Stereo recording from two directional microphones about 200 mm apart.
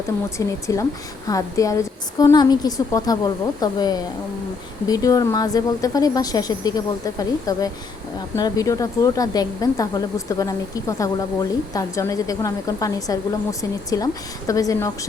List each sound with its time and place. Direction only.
0.3 s a woman's voice: 15° left (ahead or behind)